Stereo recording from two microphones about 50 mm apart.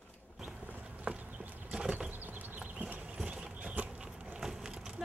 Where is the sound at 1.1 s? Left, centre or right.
Right.